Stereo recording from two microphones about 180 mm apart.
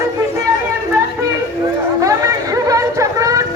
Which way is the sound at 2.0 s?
20° right (ahead or behind).